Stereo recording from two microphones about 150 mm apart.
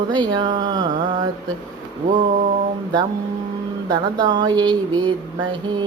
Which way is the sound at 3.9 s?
25° right (ahead or behind).